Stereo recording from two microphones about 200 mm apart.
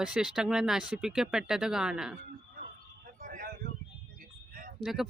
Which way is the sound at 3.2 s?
45° right (ahead or behind).